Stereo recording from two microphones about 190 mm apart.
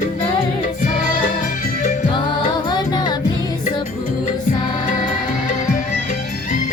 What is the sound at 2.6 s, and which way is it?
Music, 20° left (ahead or behind).